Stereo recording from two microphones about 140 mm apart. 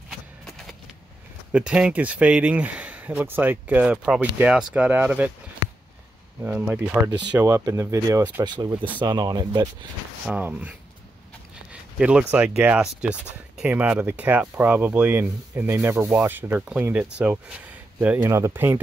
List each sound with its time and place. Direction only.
1.5 s speech: 10° right (ahead or behind)
6.4 s speech: 10° right (ahead or behind)
7.3 s speech: 20° right (ahead or behind)
10.2 s speech: 10° right (ahead or behind)
11.7 s speech: 10° right (ahead or behind)